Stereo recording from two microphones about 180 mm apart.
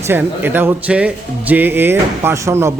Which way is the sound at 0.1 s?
10° right (ahead or behind).